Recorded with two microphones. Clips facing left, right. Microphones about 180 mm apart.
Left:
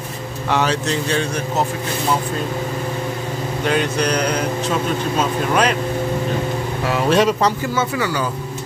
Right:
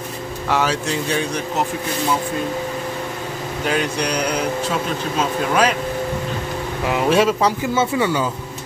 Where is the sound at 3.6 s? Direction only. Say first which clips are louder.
Left 2 dB; 10° right (ahead or behind).